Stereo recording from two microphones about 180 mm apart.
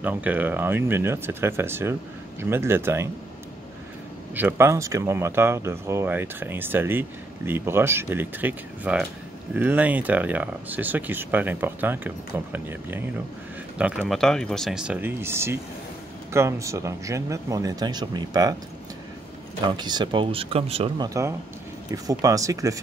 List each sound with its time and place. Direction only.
0.0 s speech: 10° right (ahead or behind)
4.4 s speech: 10° right (ahead or behind)
19.7 s speech: 25° right (ahead or behind)
21.1 s speech: 15° right (ahead or behind)